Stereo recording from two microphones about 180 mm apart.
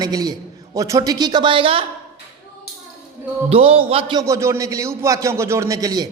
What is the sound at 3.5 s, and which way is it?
Speech, 30° right (ahead or behind).